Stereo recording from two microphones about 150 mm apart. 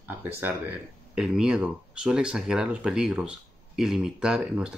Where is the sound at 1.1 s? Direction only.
5° right (ahead or behind).